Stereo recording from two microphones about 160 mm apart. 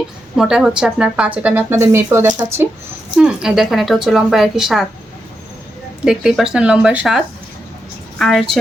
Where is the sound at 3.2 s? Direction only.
5° right (ahead or behind).